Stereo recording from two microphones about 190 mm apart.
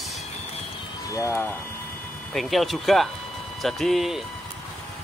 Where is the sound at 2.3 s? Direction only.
Centre (ahead or behind).